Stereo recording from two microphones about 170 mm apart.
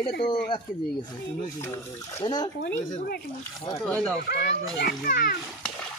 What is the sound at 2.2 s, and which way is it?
Speech, 25° left (ahead or behind).